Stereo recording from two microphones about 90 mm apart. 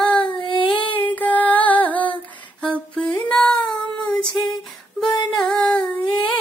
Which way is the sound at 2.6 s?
15° left (ahead or behind).